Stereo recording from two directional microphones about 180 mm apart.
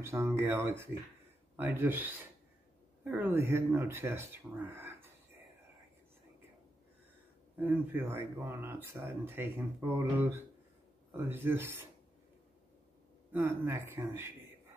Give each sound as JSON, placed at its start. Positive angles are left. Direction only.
{"t": 0.0, "sound": "speech", "side_deg": -15}
{"t": 7.6, "sound": "speech", "side_deg": -10}
{"t": 13.3, "sound": "speech", "side_deg": -15}